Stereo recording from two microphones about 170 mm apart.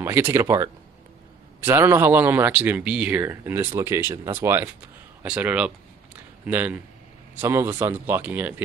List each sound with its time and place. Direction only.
0.0 s speech: 15° right (ahead or behind)